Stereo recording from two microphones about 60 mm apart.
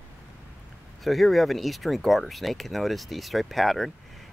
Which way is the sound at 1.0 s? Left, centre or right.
Centre.